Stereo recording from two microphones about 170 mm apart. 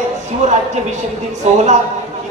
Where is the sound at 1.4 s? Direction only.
45° right (ahead or behind).